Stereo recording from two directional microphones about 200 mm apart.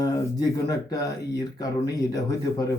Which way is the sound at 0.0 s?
20° left (ahead or behind).